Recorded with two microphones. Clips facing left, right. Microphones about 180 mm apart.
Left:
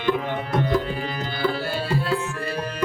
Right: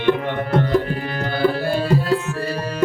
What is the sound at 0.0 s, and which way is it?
Tabla, 70° right (ahead or behind).